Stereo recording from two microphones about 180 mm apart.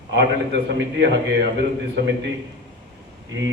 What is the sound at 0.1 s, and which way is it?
A man's voice, 80° right.